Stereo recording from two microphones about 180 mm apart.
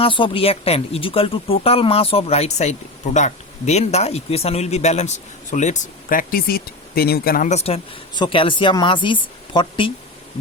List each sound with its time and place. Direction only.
0.0 s speech: 30° left (ahead or behind)